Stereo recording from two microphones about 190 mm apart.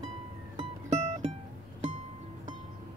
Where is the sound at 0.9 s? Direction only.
35° right (ahead or behind).